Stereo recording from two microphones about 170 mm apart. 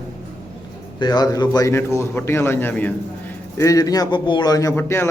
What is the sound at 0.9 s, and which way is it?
A man's voice, 25° left (ahead or behind).